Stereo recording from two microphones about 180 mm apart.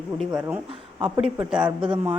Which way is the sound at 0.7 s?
25° right (ahead or behind).